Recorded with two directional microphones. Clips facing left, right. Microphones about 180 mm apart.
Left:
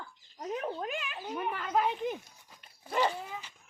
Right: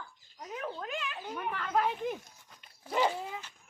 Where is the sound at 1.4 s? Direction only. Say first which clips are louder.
Even; 10° left (ahead or behind).